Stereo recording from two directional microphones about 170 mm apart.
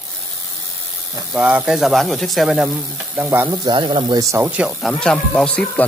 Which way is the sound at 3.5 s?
25° right (ahead or behind).